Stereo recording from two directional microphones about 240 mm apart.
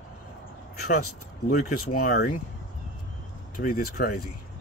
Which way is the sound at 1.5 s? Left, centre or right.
Left.